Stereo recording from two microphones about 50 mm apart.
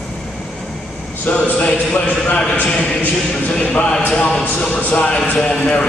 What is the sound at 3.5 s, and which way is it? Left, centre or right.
A man's voice, left.